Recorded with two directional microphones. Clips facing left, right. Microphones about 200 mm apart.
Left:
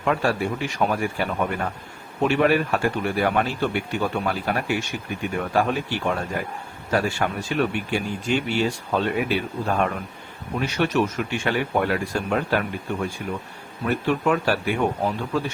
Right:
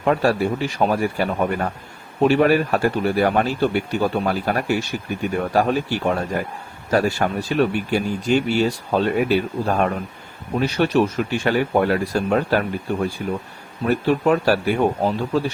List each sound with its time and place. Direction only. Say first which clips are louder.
0.0 s speech: right 4 dB; 40° right (ahead or behind)